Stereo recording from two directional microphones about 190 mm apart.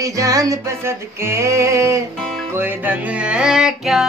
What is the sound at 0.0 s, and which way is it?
Music, 15° right (ahead or behind).